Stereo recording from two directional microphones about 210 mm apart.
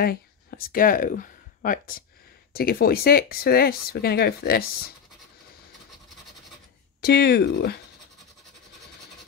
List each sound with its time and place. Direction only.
0.0 s speech: 45° left (ahead or behind)
7.0 s speech: 50° left (ahead or behind)